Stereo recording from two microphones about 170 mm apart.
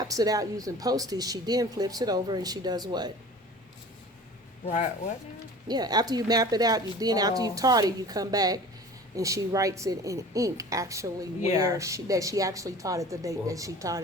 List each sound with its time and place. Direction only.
0.0 s speech: 20° right (ahead or behind)
4.6 s speech: 45° left (ahead or behind)
5.6 s speech: 25° right (ahead or behind)